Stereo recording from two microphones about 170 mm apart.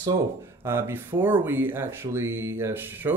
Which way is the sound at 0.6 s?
15° right (ahead or behind).